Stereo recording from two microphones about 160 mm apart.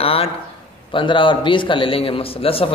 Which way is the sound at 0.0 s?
35° left (ahead or behind).